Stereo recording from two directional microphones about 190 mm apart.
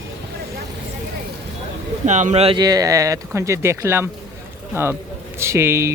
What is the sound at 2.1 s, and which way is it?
A man's voice, 40° right (ahead or behind).